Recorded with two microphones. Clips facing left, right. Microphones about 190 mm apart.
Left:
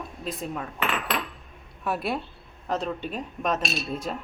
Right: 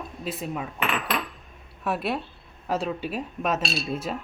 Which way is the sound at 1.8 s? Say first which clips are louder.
Right 1 dB; centre (ahead or behind).